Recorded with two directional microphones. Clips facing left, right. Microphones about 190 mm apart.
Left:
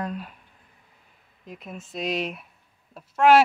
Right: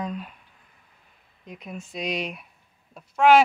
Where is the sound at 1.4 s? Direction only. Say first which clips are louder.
Right 1 dB; centre (ahead or behind).